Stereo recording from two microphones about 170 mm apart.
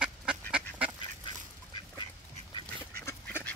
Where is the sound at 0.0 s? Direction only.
5° right (ahead or behind).